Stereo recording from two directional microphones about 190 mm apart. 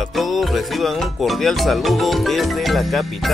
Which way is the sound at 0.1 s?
Centre (ahead or behind).